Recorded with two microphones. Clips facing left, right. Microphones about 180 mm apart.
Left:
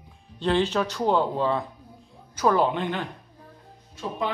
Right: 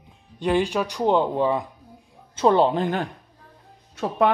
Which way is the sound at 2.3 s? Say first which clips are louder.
Right 4 dB; 25° right (ahead or behind).